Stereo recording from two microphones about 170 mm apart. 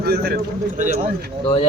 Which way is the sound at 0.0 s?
65° right (ahead or behind).